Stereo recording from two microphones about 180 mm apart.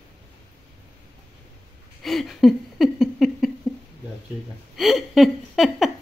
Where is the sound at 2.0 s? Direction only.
Centre (ahead or behind).